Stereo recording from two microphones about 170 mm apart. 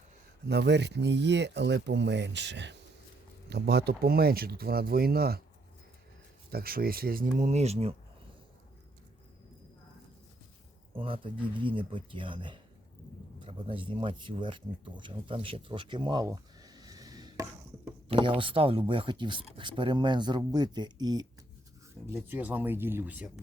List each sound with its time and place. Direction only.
0.4 s speech: 85° right
3.5 s speech: 70° right (ahead or behind)
6.5 s speech: 60° right (ahead or behind); by 7.9 s 35° right (ahead or behind)
10.9 s speech: 30° right (ahead or behind)
22.1 s speech: 10° right (ahead or behind)